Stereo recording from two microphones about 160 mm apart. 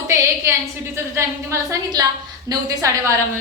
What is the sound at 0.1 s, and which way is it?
A woman's voice, 20° right (ahead or behind).